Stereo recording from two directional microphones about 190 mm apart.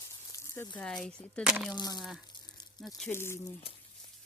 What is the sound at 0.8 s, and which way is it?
Speech, 5° left (ahead or behind).